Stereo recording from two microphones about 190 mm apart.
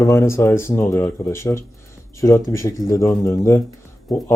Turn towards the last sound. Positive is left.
turn(degrees=0)  # may be behind; listen again after turning